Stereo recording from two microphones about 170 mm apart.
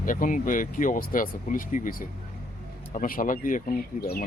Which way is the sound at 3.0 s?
50° left (ahead or behind).